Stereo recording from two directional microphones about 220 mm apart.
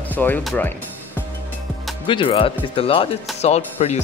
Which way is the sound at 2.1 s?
25° left (ahead or behind).